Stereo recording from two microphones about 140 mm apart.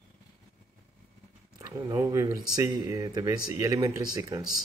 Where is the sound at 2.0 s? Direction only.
25° right (ahead or behind).